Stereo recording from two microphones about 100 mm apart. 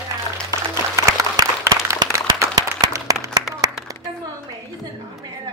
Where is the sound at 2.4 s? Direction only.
35° right (ahead or behind).